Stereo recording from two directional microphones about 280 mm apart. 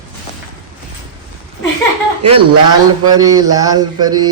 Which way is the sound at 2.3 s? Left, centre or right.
Centre.